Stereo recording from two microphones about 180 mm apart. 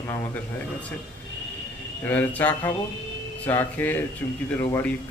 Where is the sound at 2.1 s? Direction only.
10° left (ahead or behind).